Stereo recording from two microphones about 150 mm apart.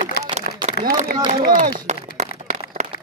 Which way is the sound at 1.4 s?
70° right (ahead or behind).